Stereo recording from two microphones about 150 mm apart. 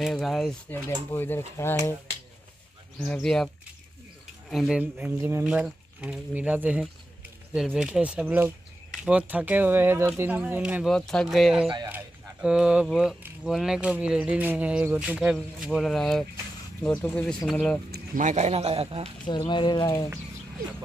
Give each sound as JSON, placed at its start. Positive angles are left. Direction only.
{"t": 0.0, "sound": "speech", "side_deg": 0}
{"t": 0.7, "sound": "speech", "side_deg": 15}
{"t": 3.1, "sound": "speech", "side_deg": 5}
{"t": 4.5, "sound": "speech", "side_deg": -5}
{"t": 4.9, "sound": "speech", "side_deg": -15}
{"t": 17.9, "sound": "speech", "side_deg": -60}
{"t": 19.2, "sound": "speech", "side_deg": 30}